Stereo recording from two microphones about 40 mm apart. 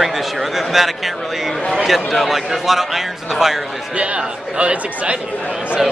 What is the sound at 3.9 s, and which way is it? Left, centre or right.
Speech, right.